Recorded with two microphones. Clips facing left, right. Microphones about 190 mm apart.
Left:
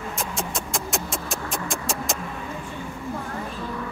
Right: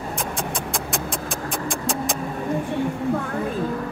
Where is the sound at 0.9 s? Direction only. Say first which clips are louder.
Right 2 dB; centre (ahead or behind).